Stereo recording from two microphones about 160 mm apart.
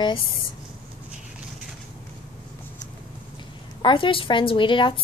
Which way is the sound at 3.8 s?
30° left (ahead or behind).